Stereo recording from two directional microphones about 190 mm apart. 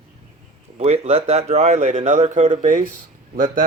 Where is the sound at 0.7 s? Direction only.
35° right (ahead or behind).